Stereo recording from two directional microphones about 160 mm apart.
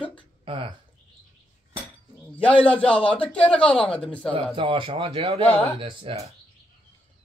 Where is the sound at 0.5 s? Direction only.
35° right (ahead or behind).